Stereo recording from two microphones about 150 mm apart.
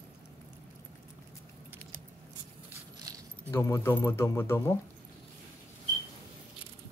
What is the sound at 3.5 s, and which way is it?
Speech, 15° left (ahead or behind).